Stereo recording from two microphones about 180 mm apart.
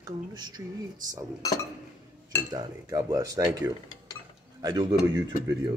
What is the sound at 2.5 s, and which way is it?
Speech, 20° right (ahead or behind).